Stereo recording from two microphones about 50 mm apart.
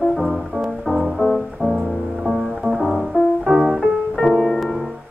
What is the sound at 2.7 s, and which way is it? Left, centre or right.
Music, centre.